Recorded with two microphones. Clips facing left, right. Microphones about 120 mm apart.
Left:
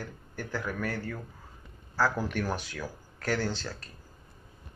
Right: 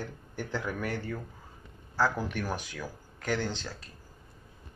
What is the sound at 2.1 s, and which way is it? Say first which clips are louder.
Speech: left 2 dB; 15° right (ahead or behind).